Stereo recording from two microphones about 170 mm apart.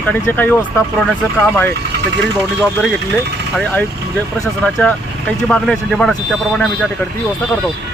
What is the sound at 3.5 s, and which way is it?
Speech, 10° left (ahead or behind).